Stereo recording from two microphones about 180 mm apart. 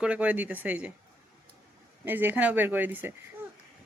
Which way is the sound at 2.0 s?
10° right (ahead or behind).